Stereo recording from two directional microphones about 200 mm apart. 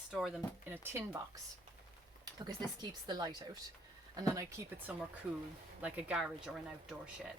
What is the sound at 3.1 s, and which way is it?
Speech, 20° right (ahead or behind).